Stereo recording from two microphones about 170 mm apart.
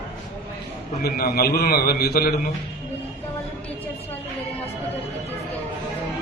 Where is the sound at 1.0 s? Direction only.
65° left (ahead or behind).